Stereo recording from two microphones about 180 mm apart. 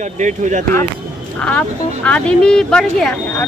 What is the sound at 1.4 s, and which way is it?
Speech, 10° left (ahead or behind).